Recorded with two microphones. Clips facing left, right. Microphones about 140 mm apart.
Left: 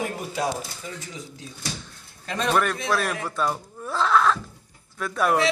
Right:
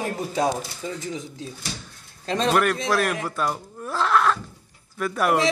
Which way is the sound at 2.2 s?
30° right (ahead or behind).